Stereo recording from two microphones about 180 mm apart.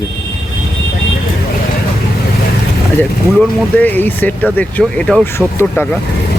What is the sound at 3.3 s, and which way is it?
Speech, 10° left (ahead or behind).